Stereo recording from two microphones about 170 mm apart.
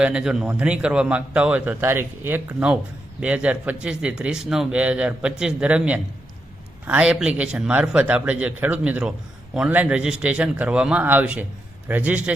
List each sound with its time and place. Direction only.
0.0 s speech: 5° right (ahead or behind)